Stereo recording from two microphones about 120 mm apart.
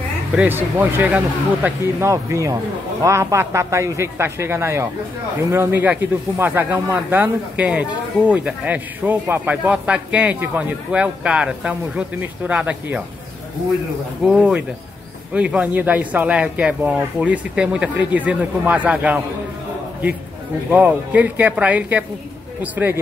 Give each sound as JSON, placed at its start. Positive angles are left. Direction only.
{"t": 0.4, "sound": "speech", "side_deg": -15}
{"t": 2.0, "sound": "a man's voice", "side_deg": -25}
{"t": 14.2, "sound": "speech", "side_deg": -10}
{"t": 20.7, "sound": "speech", "side_deg": -15}